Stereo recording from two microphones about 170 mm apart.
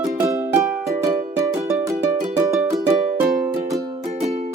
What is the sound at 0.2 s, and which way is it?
Music, 20° right (ahead or behind).